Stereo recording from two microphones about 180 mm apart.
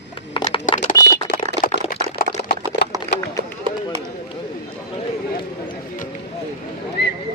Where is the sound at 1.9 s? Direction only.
55° left (ahead or behind).